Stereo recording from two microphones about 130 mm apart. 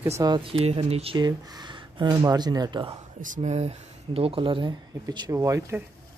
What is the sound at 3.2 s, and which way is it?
Speech, 75° right (ahead or behind).